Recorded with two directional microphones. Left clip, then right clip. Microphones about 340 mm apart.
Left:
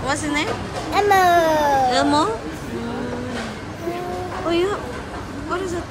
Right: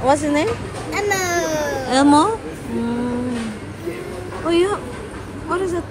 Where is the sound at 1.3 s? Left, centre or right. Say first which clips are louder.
Left 4 dB; left.